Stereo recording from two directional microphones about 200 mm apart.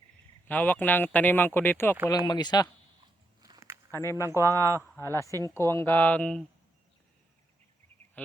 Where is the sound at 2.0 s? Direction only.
20° left (ahead or behind).